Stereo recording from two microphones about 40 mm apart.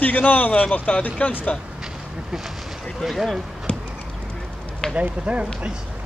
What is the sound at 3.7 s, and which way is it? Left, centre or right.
Clip-clop, left.